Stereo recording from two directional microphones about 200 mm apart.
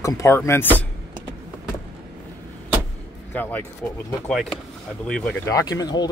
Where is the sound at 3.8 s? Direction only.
10° left (ahead or behind).